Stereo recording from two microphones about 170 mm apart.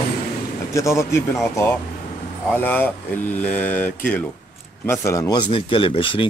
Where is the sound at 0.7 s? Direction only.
15° left (ahead or behind).